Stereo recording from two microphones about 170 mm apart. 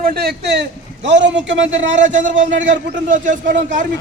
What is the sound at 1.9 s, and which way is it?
A man's voice, 50° right (ahead or behind).